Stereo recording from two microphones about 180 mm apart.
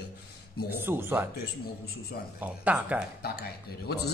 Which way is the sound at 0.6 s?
10° right (ahead or behind).